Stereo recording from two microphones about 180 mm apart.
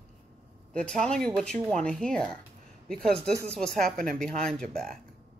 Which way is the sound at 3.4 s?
5° left (ahead or behind).